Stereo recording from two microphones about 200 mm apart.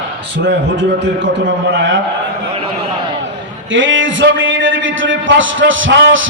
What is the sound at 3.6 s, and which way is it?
A man's voice, 70° right (ahead or behind).